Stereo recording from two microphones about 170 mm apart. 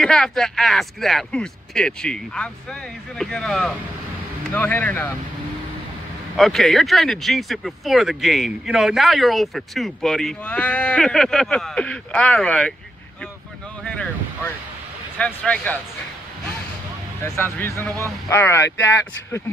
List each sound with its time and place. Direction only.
0.0 s speech: 5° left (ahead or behind)
6.3 s speech: centre (ahead or behind)
13.8 s speech: 5° left (ahead or behind)
17.2 s speech: 15° left (ahead or behind)